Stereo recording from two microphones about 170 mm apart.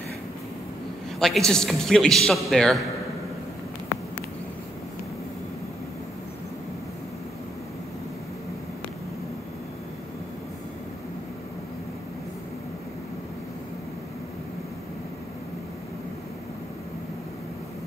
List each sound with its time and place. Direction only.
1.2 s a man's voice: centre (ahead or behind)